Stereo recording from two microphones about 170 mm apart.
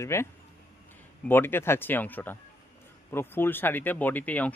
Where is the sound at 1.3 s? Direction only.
15° left (ahead or behind).